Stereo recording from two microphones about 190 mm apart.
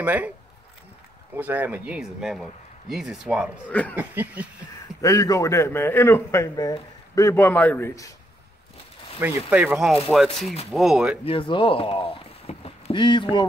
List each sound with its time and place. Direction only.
0.0 s speech: 10° right (ahead or behind)
1.3 s speech: 10° right (ahead or behind)
3.9 s a sound: 10° right (ahead or behind)
5.0 s a man's voice: 15° left (ahead or behind)
9.5 s a sound: 5° right (ahead or behind)
10.1 s speech: centre (ahead or behind)
11.2 s speech: 25° left (ahead or behind)